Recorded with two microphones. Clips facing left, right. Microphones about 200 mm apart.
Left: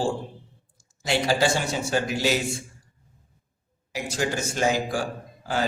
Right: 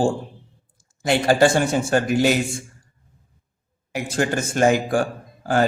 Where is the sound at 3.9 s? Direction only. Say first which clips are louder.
Right 5 dB; 55° right (ahead or behind).